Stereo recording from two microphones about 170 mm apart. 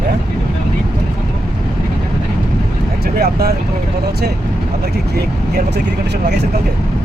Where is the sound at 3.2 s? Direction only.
65° right (ahead or behind).